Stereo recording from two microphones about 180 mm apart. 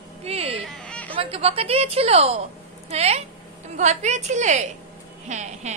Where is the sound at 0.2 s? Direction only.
35° right (ahead or behind).